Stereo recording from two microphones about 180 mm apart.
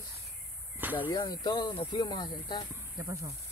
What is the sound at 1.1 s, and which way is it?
Speech, 20° left (ahead or behind).